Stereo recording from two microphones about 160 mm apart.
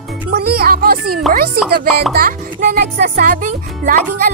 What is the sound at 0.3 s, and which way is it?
Music, 75° right (ahead or behind).